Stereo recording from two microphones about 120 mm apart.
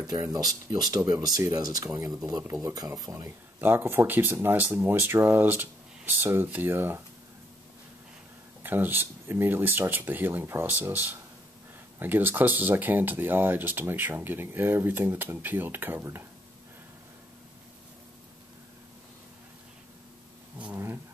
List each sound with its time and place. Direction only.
0.0 s speech: 30° right (ahead or behind)
8.6 s speech: 15° right (ahead or behind)
20.5 s speech: 10° right (ahead or behind)